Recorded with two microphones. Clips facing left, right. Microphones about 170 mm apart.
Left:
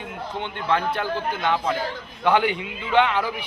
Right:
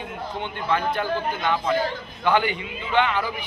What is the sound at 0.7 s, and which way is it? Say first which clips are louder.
Speech: left 1 dB; 5° right (ahead or behind).